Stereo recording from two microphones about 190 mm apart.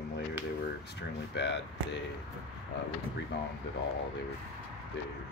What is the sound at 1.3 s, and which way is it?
Speech, 65° left (ahead or behind).